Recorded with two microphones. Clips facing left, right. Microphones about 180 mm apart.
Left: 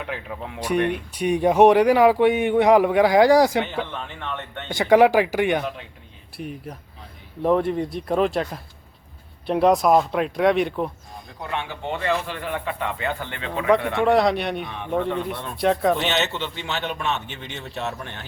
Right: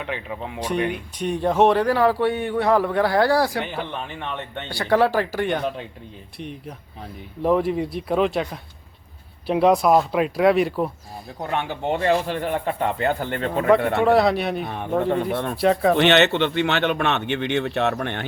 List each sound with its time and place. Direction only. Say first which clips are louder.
0.0 s speech: right 2 dB; centre (ahead or behind)
1.2 s a man's voice: left 3 dB; 10° left (ahead or behind)
3.7 s a man's voice: even; 15° right (ahead or behind)
4.7 s a man's voice: left 4 dB; 15° left (ahead or behind); by 10.9 s 5° right (ahead or behind)
11.3 s speech: right 4 dB; 45° right (ahead or behind)
14.0 s speech: right 1 dB; centre (ahead or behind)
15.2 s speech: right 5 dB; 60° right (ahead or behind)
15.5 s speech: right 1 dB; centre (ahead or behind)
16.0 s speech: right 8 dB; 65° right (ahead or behind)